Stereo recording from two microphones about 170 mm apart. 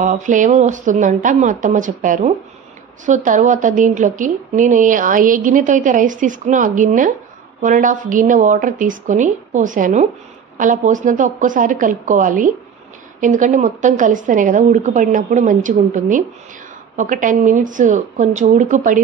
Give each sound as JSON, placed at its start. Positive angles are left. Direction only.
{"t": 0.0, "sound": "speech", "side_deg": -50}